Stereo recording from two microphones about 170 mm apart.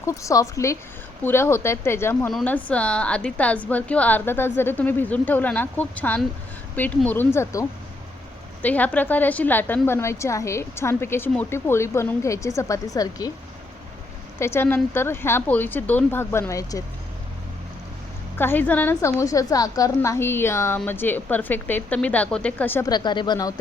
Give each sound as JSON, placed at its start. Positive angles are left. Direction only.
{"t": 0.0, "sound": "a woman's voice", "side_deg": 20}
{"t": 8.6, "sound": "a woman's voice", "side_deg": 10}
{"t": 14.3, "sound": "a woman's voice", "side_deg": 15}
{"t": 18.3, "sound": "a woman's voice", "side_deg": 10}
{"t": 22.9, "sound": "speech", "side_deg": 25}